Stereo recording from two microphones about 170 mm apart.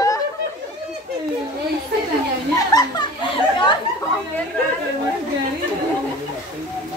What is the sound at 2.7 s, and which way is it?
Children playing, 20° left (ahead or behind).